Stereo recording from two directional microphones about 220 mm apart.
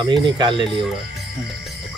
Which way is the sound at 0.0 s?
20° right (ahead or behind).